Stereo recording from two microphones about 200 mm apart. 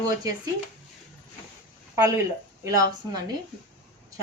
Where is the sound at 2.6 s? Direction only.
20° right (ahead or behind).